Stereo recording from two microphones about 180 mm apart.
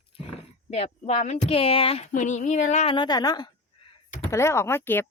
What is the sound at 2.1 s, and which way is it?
Speech, 45° left (ahead or behind).